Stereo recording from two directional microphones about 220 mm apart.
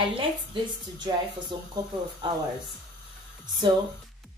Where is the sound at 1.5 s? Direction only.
20° right (ahead or behind).